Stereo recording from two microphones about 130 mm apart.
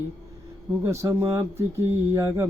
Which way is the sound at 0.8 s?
20° right (ahead or behind).